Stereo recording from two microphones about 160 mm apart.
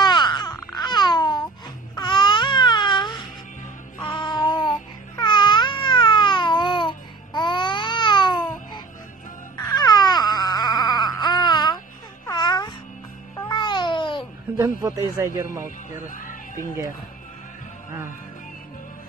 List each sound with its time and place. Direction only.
0.0 s babbling: 30° left (ahead or behind)
9.6 s baby cry: 25° left (ahead or behind)
12.3 s music: 25° left (ahead or behind)
13.4 s babbling: 30° left (ahead or behind)
14.6 s a man's voice: 20° right (ahead or behind)
16.2 s music: 55° left (ahead or behind)